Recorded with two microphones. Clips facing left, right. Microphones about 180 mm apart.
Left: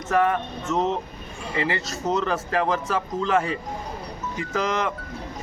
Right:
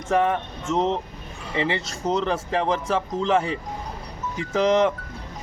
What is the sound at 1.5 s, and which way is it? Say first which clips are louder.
Speech: right 1 dB; 25° right (ahead or behind).